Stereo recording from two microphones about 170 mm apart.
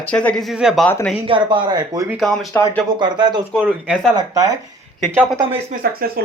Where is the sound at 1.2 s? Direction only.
30° right (ahead or behind).